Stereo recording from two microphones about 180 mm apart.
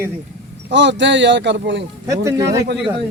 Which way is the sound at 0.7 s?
85° right.